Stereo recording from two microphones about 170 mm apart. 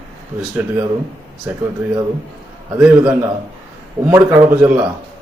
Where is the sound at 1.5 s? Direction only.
10° right (ahead or behind).